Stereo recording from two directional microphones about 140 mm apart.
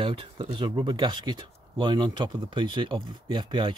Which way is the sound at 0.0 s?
40° right (ahead or behind).